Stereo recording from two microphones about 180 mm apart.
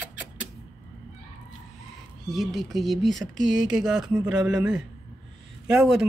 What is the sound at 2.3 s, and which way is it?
Speech, centre (ahead or behind).